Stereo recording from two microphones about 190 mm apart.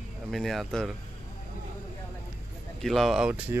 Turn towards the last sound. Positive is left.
turn(degrees=-5)  # may be behind; listen again after turning